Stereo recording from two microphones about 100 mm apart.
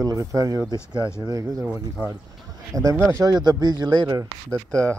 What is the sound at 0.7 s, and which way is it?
Speech, 30° left (ahead or behind).